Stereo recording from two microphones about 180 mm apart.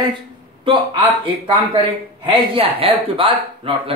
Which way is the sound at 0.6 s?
30° right (ahead or behind).